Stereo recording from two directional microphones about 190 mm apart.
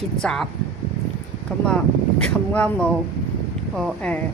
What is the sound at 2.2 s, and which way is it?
Speech, 5° left (ahead or behind).